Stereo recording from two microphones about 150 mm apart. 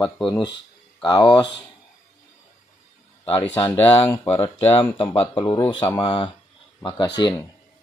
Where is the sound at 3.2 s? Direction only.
35° left (ahead or behind).